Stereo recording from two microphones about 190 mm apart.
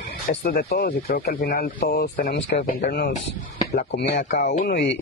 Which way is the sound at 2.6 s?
45° left (ahead or behind).